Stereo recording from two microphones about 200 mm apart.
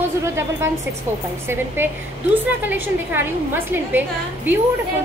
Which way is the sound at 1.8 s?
10° right (ahead or behind).